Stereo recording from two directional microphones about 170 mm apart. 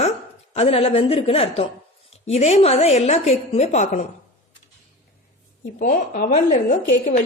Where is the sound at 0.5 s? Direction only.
35° left (ahead or behind).